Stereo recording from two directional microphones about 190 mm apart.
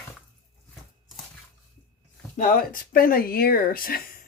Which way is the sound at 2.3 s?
45° left (ahead or behind).